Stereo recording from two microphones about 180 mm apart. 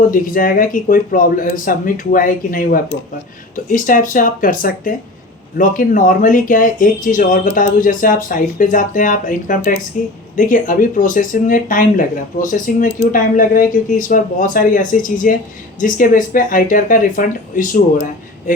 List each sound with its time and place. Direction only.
0.1 s speech: 50° left (ahead or behind)